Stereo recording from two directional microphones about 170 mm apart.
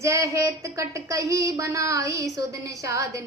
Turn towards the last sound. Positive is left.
turn(degrees=-20)  # may be behind; listen again after turning